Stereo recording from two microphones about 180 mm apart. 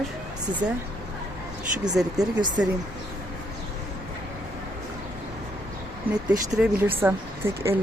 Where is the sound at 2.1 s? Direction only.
20° right (ahead or behind).